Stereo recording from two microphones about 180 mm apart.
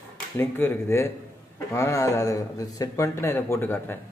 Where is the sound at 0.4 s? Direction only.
10° left (ahead or behind).